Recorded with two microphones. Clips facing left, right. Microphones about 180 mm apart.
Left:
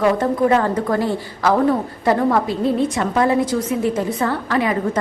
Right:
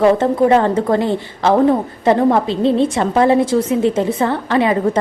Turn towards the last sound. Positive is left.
turn(degrees=-25)  # may be behind; listen again after turning